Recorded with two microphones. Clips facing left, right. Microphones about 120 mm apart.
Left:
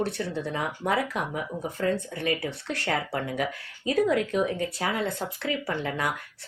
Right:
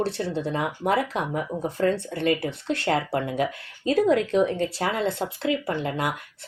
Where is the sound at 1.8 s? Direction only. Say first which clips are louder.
Right 4 dB; 35° right (ahead or behind).